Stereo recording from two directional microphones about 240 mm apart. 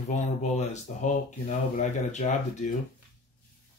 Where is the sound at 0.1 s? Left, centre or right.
Left.